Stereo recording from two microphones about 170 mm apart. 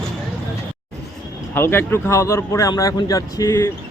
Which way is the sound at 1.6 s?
15° left (ahead or behind).